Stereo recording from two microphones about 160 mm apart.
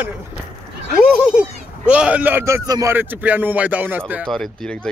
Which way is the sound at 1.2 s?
5° right (ahead or behind).